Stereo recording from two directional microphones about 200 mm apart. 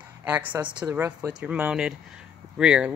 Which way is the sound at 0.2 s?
10° right (ahead or behind).